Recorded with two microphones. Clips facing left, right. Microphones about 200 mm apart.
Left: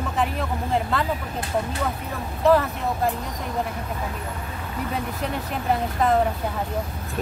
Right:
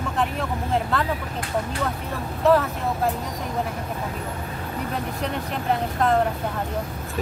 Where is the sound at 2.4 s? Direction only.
Centre (ahead or behind).